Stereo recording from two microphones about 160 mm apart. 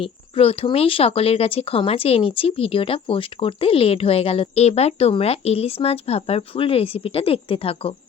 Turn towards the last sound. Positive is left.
turn(degrees=35)  # may be behind; listen again after turning